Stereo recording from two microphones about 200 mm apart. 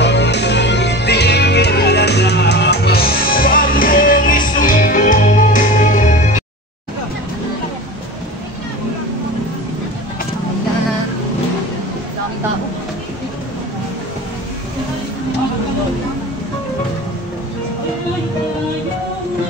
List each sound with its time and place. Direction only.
0.0 s music: 60° left (ahead or behind); by 6.4 s 40° left (ahead or behind)